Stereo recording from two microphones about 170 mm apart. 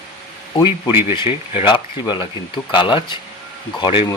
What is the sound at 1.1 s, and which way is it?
Speech, 30° left (ahead or behind).